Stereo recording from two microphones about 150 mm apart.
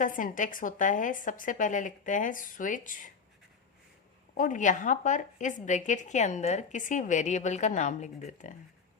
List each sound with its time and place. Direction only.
0.0 s a woman's voice: 60° left (ahead or behind)
4.4 s a woman's voice: 60° left (ahead or behind)